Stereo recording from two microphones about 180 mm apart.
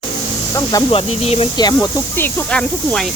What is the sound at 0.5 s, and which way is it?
Speech, 20° left (ahead or behind).